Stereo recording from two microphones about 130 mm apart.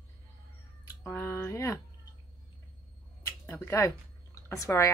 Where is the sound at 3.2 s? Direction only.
20° left (ahead or behind).